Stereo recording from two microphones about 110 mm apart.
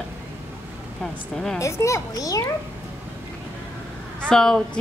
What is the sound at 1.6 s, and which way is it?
Speech, 25° left (ahead or behind).